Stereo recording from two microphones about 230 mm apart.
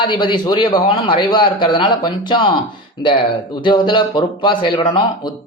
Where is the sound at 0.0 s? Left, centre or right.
Centre.